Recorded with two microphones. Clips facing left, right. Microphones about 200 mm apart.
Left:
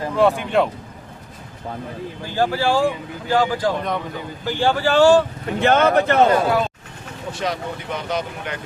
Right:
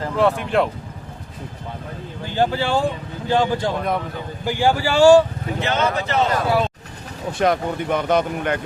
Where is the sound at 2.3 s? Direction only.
20° right (ahead or behind).